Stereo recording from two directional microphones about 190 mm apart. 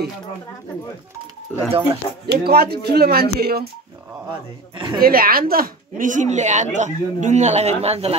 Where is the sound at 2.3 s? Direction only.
55° right (ahead or behind).